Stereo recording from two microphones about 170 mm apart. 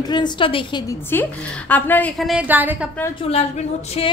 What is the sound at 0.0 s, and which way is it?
Speech, 25° left (ahead or behind).